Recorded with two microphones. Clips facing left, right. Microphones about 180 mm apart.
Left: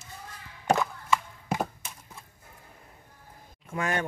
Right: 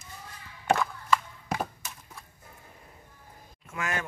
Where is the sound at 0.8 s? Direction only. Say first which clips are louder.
Even; 20° left (ahead or behind).